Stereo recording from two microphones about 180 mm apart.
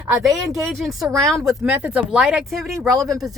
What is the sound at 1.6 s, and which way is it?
Speech, 10° right (ahead or behind).